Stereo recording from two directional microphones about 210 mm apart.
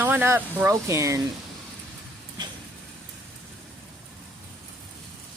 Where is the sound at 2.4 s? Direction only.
20° right (ahead or behind).